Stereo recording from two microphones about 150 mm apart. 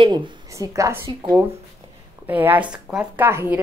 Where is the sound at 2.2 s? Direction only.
10° right (ahead or behind).